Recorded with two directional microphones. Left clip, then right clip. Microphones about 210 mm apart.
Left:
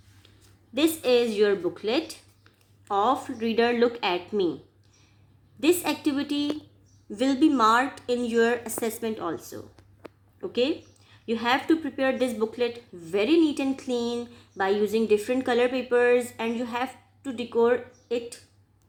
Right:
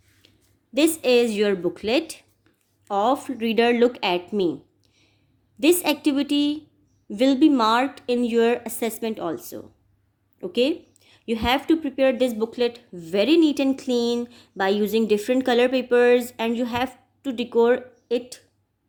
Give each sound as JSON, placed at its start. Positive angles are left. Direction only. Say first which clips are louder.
{"t": 0.7, "sound": "speech", "louder": "right 3 dB", "side_deg": -40}
{"t": 5.5, "sound": "speech", "louder": "right 4 dB", "side_deg": -40}